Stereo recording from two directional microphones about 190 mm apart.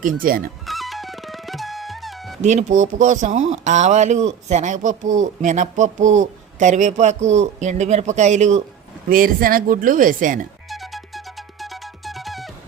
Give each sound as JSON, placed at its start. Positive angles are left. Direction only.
{"t": 0.0, "sound": "speech", "side_deg": -50}
{"t": 0.6, "sound": "music", "side_deg": 0}
{"t": 2.4, "sound": "speech", "side_deg": -40}
{"t": 9.0, "sound": "speech", "side_deg": -50}
{"t": 10.7, "sound": "music", "side_deg": 0}